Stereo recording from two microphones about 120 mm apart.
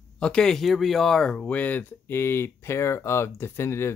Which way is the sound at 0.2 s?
5° left (ahead or behind).